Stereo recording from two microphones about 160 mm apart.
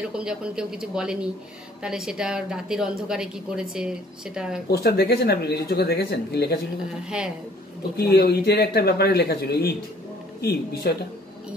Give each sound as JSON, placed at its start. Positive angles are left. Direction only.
{"t": 0.0, "sound": "a woman's voice", "side_deg": -5}
{"t": 4.6, "sound": "speech", "side_deg": 80}
{"t": 8.0, "sound": "speech", "side_deg": 85}